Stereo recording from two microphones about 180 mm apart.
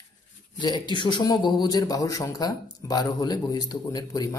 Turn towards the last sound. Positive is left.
turn(degrees=20)  # may be behind; listen again after turning